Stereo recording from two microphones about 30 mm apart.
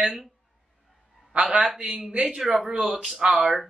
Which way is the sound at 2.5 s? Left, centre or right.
Right.